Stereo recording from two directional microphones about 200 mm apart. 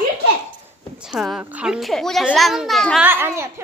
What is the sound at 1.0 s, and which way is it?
A child's voice, centre (ahead or behind).